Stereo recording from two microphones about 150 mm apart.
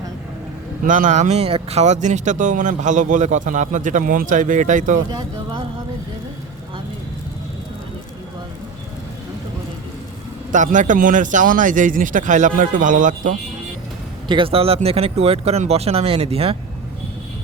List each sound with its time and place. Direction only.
0.9 s speech: 60° right (ahead or behind)
10.5 s speech: 55° right (ahead or behind)
14.3 s speech: 35° right (ahead or behind)